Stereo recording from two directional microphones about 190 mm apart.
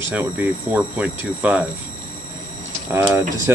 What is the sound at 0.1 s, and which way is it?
Speech, 10° right (ahead or behind).